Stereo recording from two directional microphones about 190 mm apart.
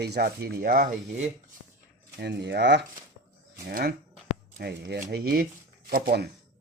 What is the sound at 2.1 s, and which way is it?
Speech, 60° right (ahead or behind).